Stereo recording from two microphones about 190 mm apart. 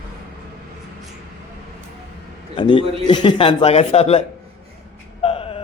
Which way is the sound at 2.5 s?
25° left (ahead or behind).